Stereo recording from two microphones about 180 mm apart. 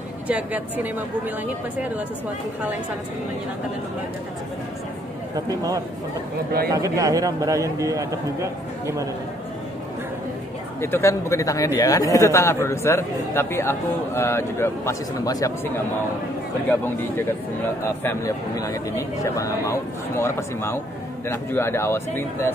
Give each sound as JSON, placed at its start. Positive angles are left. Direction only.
{"t": 0.3, "sound": "a woman's voice", "side_deg": -10}
{"t": 5.3, "sound": "speech", "side_deg": -20}
{"t": 10.8, "sound": "a man's voice", "side_deg": 15}
{"t": 16.8, "sound": "a man's voice", "side_deg": 10}